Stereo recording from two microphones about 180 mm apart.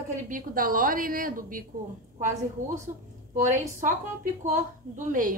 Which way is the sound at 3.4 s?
45° right (ahead or behind).